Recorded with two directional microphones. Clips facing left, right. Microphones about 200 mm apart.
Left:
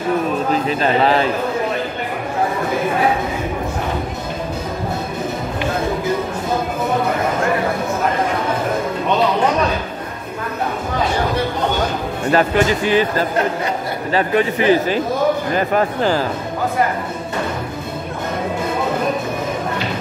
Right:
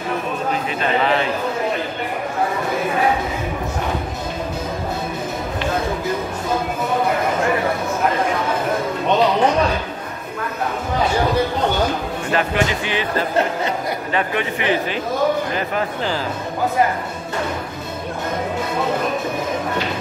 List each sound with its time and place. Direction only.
0.7 s speech: 35° left (ahead or behind)
12.3 s speech: 40° left (ahead or behind)
14.1 s speech: 35° left (ahead or behind)